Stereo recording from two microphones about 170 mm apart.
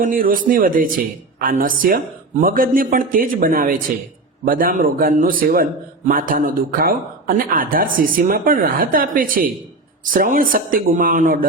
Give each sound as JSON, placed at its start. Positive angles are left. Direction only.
{"t": 0.0, "sound": "a man's voice", "side_deg": -55}